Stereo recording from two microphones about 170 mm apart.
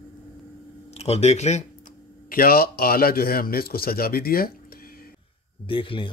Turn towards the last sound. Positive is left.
turn(degrees=30)  # may be behind; listen again after turning